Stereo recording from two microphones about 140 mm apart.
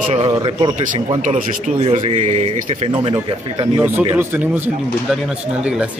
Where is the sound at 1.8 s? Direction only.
50° right (ahead or behind).